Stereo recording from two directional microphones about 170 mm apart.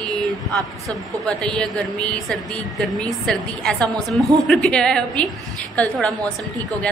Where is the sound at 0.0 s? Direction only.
20° right (ahead or behind).